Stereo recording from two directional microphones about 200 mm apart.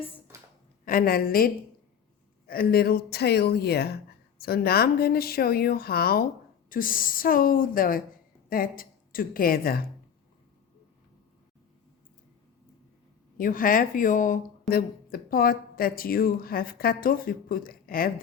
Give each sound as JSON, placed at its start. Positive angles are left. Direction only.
{"t": 0.9, "sound": "a woman's voice", "side_deg": 45}
{"t": 13.3, "sound": "speech", "side_deg": 45}